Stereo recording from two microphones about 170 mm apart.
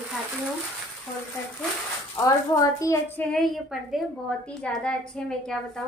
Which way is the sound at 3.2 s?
Centre (ahead or behind).